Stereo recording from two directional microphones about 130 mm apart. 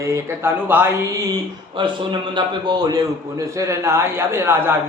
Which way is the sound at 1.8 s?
40° right (ahead or behind).